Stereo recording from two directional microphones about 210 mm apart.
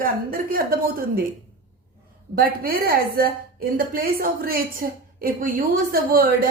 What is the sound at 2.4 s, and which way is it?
A woman's voice, 45° right (ahead or behind).